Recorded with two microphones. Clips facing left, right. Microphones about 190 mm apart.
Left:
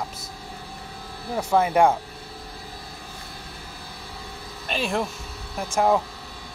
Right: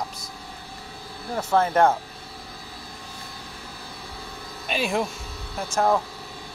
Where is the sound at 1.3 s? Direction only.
10° left (ahead or behind).